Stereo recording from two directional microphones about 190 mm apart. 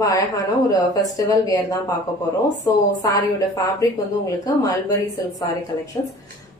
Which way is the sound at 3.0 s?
20° left (ahead or behind).